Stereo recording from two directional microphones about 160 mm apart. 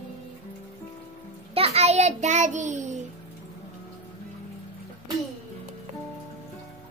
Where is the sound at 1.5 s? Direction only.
40° right (ahead or behind).